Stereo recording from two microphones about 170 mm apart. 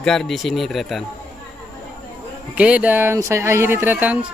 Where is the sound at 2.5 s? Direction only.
10° right (ahead or behind).